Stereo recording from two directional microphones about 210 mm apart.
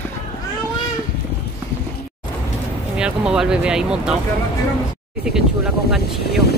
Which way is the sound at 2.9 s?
5° right (ahead or behind).